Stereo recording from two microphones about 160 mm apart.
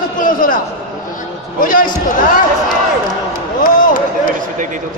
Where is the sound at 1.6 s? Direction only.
60° left (ahead or behind).